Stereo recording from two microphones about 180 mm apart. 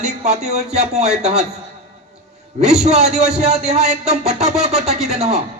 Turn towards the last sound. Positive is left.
turn(degrees=-35)  # may be behind; listen again after turning